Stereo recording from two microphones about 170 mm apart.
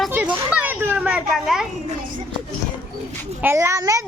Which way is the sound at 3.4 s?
15° right (ahead or behind).